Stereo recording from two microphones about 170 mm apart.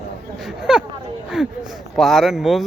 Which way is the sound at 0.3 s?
Centre (ahead or behind).